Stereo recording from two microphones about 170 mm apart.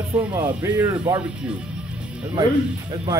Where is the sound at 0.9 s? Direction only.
25° right (ahead or behind).